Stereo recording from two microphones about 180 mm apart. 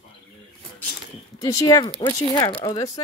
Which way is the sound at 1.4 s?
20° left (ahead or behind).